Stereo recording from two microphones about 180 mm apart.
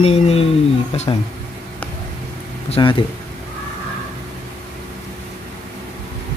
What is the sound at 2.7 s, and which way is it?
Speech, 30° left (ahead or behind).